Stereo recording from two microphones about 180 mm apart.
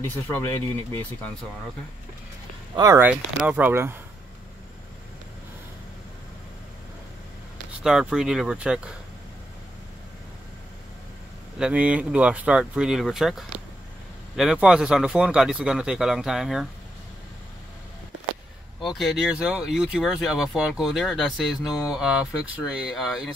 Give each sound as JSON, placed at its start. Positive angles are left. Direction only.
{"t": 0.0, "sound": "speech", "side_deg": 10}
{"t": 2.7, "sound": "speech", "side_deg": -20}
{"t": 7.8, "sound": "speech", "side_deg": -5}
{"t": 11.5, "sound": "speech", "side_deg": -5}
{"t": 18.8, "sound": "speech", "side_deg": 0}